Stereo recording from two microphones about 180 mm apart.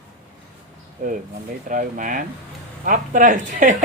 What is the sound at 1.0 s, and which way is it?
Speech, 50° right (ahead or behind).